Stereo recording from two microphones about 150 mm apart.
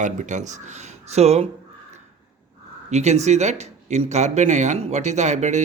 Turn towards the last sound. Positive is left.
turn(degrees=-50)  # may be behind; listen again after turning